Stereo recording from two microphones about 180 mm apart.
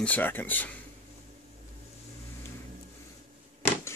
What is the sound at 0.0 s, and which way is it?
Speech, 10° left (ahead or behind).